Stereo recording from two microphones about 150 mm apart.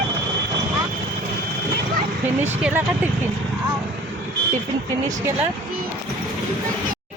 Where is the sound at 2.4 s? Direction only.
15° right (ahead or behind).